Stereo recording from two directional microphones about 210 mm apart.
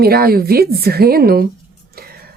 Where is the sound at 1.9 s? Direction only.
45° right (ahead or behind).